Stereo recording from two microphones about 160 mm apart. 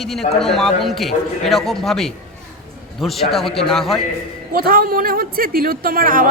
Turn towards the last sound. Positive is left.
turn(degrees=-60)  # may be behind; listen again after turning